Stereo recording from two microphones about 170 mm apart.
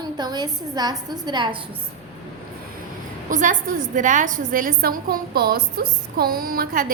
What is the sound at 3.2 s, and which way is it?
A woman's voice, 50° right (ahead or behind).